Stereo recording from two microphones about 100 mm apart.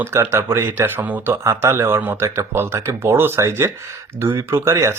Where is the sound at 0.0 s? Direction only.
25° right (ahead or behind).